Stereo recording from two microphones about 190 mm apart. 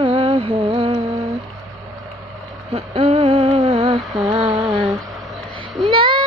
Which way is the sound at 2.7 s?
30° right (ahead or behind).